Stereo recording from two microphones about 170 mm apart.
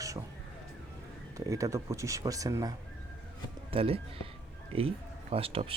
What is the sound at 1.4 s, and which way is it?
Speech, 20° right (ahead or behind).